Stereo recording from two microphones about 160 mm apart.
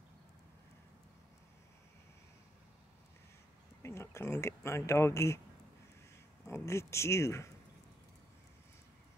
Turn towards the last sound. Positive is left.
turn(degrees=15)  # may be behind; listen again after turning